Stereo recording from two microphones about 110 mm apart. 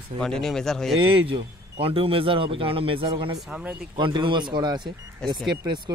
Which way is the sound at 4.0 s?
45° right (ahead or behind).